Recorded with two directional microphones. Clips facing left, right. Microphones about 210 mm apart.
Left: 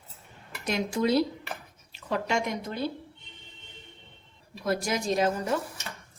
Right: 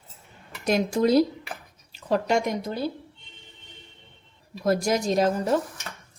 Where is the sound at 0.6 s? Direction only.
40° right (ahead or behind).